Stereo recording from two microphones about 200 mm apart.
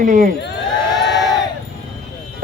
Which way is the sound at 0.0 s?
40° right (ahead or behind).